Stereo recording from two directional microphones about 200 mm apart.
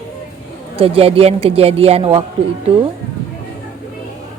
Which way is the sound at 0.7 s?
30° right (ahead or behind).